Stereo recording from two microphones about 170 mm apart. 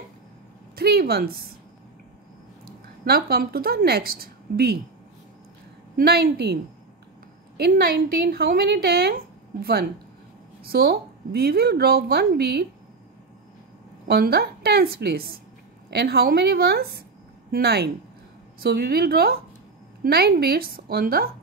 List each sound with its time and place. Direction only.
0.7 s a woman's voice: 65° right (ahead or behind)
2.6 s speech: 65° right (ahead or behind)
5.9 s a woman's voice: 65° right (ahead or behind)
14.0 s a woman's voice: 70° right (ahead or behind)